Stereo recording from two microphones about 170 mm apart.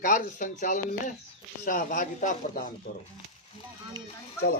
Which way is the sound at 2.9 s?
65° left (ahead or behind).